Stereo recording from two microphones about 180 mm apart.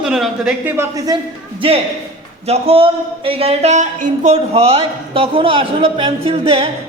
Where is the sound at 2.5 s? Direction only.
30° right (ahead or behind).